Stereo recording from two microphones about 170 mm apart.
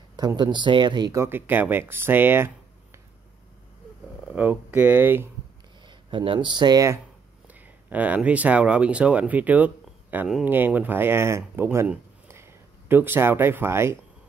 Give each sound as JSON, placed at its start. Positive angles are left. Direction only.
{"t": 0.1, "sound": "speech", "side_deg": -25}
{"t": 4.3, "sound": "speech", "side_deg": -10}
{"t": 5.9, "sound": "speech", "side_deg": -30}
{"t": 7.4, "sound": "speech", "side_deg": -10}